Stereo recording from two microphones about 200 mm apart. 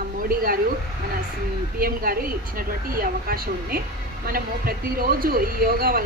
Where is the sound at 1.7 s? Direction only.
50° right (ahead or behind).